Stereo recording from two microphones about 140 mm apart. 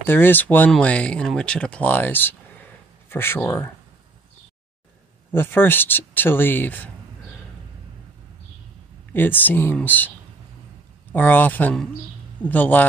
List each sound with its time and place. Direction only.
0.0 s speech: 15° left (ahead or behind)
5.3 s speech: 15° left (ahead or behind)
9.1 s speech: 15° left (ahead or behind)